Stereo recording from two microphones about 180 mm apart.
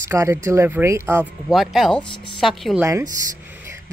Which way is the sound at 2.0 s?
25° left (ahead or behind).